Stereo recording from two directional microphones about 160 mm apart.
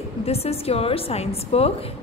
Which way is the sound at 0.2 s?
40° left (ahead or behind).